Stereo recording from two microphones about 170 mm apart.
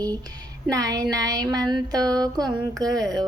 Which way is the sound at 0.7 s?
20° right (ahead or behind).